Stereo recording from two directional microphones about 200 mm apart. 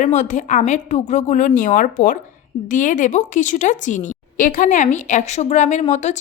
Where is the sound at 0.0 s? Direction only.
35° left (ahead or behind).